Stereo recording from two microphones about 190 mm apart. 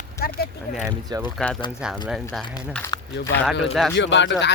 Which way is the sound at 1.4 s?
5° left (ahead or behind).